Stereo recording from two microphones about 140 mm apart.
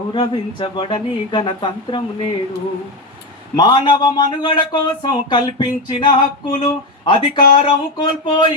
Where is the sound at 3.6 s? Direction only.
30° left (ahead or behind).